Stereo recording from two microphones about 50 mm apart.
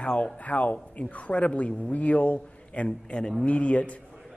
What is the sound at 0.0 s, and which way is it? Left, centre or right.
Speech, left.